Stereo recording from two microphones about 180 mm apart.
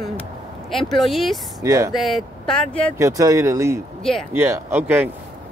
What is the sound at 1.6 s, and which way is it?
Speech, 15° right (ahead or behind).